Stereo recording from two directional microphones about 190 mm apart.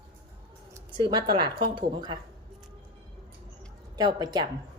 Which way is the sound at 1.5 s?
25° right (ahead or behind).